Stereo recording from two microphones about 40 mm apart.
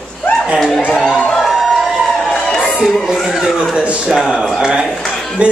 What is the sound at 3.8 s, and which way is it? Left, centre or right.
Speech, right.